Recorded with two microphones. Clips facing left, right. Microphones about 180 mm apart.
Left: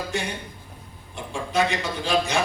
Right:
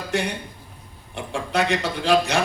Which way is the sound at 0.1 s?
65° right (ahead or behind).